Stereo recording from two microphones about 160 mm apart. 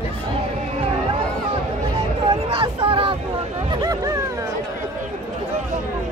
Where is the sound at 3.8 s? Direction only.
20° right (ahead or behind).